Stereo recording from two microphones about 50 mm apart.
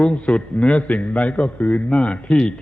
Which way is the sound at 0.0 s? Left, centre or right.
Left.